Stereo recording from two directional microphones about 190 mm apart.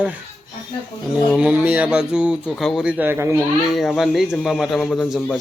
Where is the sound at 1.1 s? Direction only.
5° right (ahead or behind).